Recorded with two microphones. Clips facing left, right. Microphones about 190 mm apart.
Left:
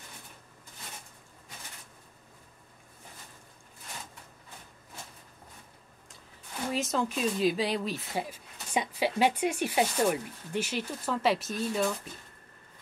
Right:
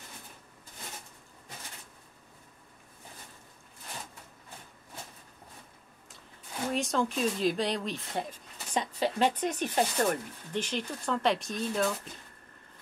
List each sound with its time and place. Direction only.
6.7 s speech: centre (ahead or behind)